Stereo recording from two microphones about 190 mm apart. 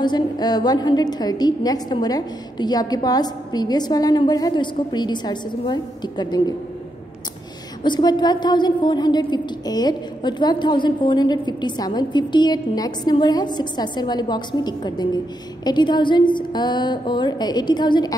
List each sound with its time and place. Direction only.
0.0 s a woman's voice: 20° left (ahead or behind)
7.8 s a woman's voice: 20° left (ahead or behind)